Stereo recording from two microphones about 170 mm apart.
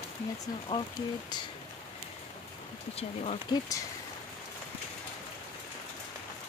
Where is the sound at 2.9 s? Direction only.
40° left (ahead or behind).